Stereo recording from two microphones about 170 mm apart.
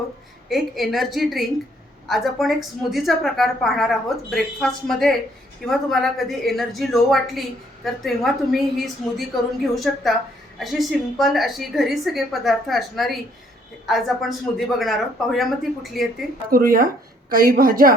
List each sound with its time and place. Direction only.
0.4 s a woman's voice: centre (ahead or behind)
16.5 s a woman's voice: 60° right (ahead or behind)